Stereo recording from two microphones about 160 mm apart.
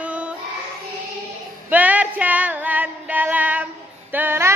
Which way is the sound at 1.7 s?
10° right (ahead or behind).